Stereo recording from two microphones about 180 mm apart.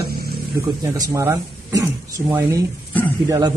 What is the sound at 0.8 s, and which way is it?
A man's voice, 20° right (ahead or behind).